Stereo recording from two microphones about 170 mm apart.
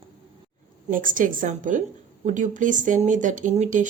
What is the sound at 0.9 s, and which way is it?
Speech, 50° right (ahead or behind).